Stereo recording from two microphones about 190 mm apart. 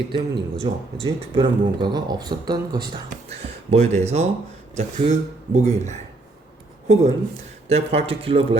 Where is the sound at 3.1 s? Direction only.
35° right (ahead or behind).